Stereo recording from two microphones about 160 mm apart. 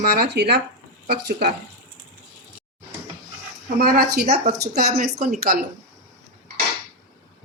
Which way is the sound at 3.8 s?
70° right (ahead or behind).